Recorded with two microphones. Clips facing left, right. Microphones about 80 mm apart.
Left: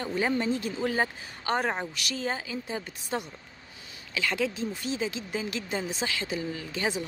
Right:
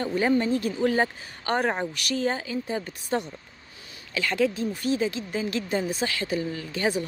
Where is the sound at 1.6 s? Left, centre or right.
Centre.